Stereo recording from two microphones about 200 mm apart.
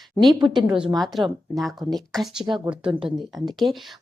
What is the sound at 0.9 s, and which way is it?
A woman's voice, centre (ahead or behind).